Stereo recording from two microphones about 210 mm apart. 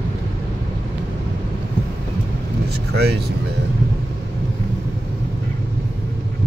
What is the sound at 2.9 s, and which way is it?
Speech, 50° right (ahead or behind).